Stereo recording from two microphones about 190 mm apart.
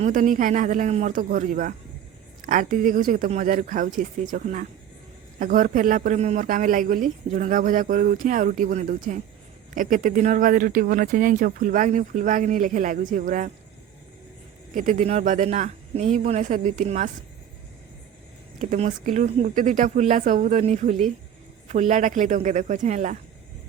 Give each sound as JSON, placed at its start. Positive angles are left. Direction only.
{"t": 0.0, "sound": "a man's voice", "side_deg": -40}
{"t": 14.7, "sound": "speech", "side_deg": -45}
{"t": 18.6, "sound": "speech", "side_deg": -40}